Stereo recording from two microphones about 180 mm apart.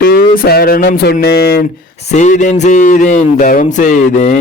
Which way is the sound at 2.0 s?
40° left (ahead or behind).